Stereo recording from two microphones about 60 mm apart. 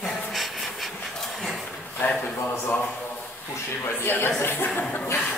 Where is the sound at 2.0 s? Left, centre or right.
Left.